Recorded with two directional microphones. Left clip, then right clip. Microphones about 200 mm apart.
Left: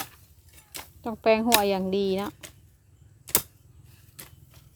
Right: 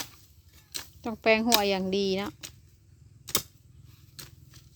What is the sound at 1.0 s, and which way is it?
Speech, 5° right (ahead or behind).